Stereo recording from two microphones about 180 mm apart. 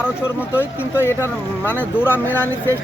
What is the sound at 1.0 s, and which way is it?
Speech, 15° left (ahead or behind).